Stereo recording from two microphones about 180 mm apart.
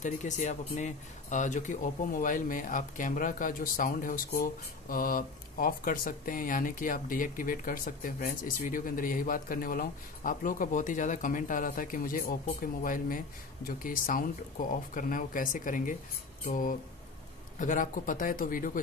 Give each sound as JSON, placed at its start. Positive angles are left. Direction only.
{"t": 0.0, "sound": "speech", "side_deg": 40}